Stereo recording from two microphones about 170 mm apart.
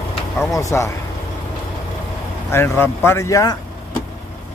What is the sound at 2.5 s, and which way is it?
Speech, 15° left (ahead or behind).